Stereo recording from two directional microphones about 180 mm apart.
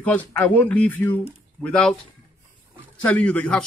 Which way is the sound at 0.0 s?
10° left (ahead or behind).